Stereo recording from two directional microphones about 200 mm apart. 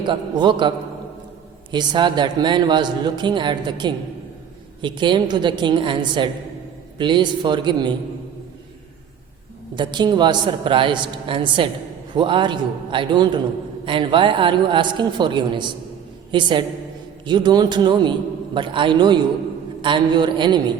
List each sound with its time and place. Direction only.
0.0 s speech: 25° right (ahead or behind)
1.7 s speech: 20° right (ahead or behind)
9.7 s speech: 20° right (ahead or behind)